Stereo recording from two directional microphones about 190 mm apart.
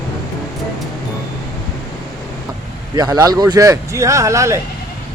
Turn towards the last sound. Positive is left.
turn(degrees=-15)  # may be behind; listen again after turning